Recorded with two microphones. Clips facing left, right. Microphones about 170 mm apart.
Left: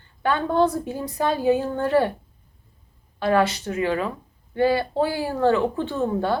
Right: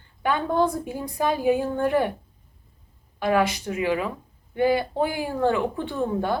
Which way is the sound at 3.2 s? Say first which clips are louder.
Left 2 dB; 15° right (ahead or behind).